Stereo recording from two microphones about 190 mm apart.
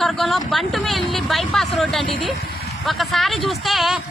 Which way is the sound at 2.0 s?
25° left (ahead or behind).